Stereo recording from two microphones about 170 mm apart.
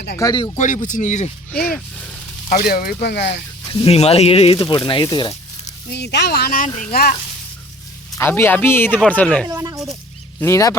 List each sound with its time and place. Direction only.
0.2 s speech: 25° left (ahead or behind)
0.5 s speech: 50° left (ahead or behind)
2.5 s speech: 60° left (ahead or behind); by 3.4 s 85° left
3.7 s speech: 35° left (ahead or behind)
5.9 s speech: 80° left; by 7.2 s 65° left (ahead or behind)
8.1 s speech: 15° left (ahead or behind)
9.5 s speech: 20° right (ahead or behind)
10.4 s speech: 20° left (ahead or behind)